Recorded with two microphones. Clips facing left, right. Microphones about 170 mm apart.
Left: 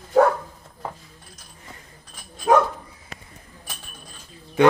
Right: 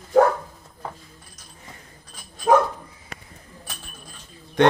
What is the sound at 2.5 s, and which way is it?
Dog, 45° right (ahead or behind).